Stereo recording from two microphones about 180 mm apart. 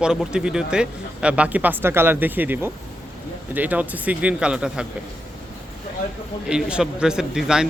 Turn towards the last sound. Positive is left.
turn(degrees=-5)  # may be behind; listen again after turning